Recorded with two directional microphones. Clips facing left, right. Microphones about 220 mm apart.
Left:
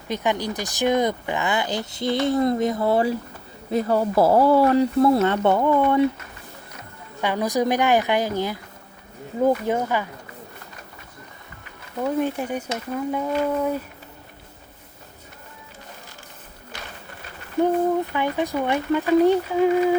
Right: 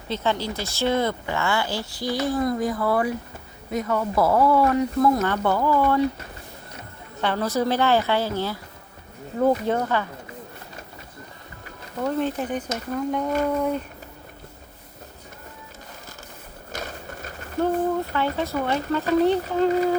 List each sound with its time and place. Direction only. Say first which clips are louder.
0.1 s speech: left 1 dB; 15° left (ahead or behind)
7.2 s speech: left 1 dB; 15° left (ahead or behind)
12.0 s speech: left 1 dB; 10° left (ahead or behind)
16.7 s a sound: right 6 dB; 45° right (ahead or behind)
18.1 s speech: left 1 dB; 15° left (ahead or behind)